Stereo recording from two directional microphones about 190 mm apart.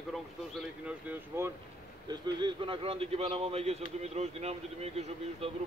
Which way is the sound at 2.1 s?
25° right (ahead or behind).